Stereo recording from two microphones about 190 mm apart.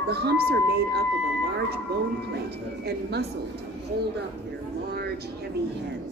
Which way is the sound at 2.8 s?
60° right (ahead or behind).